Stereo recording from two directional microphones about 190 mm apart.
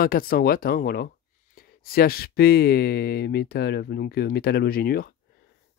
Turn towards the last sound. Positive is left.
turn(degrees=55)  # may be behind; listen again after turning